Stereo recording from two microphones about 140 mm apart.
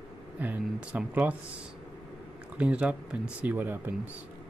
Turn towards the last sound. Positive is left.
turn(degrees=-15)  # may be behind; listen again after turning